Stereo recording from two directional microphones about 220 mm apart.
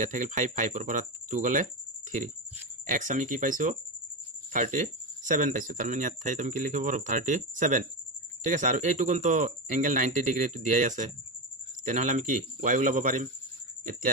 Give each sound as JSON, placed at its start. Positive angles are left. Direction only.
{"t": 0.0, "sound": "speech", "side_deg": -35}
{"t": 2.9, "sound": "speech", "side_deg": -35}